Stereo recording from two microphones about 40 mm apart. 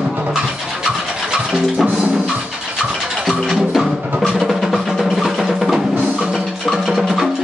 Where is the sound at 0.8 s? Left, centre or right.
Centre.